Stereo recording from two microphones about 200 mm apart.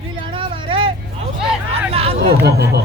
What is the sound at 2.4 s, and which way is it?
Speech, 55° right (ahead or behind).